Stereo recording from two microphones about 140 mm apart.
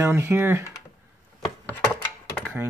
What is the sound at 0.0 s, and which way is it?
Speech, 20° right (ahead or behind).